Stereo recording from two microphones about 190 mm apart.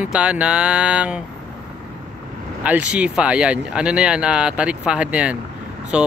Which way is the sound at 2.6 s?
5° right (ahead or behind).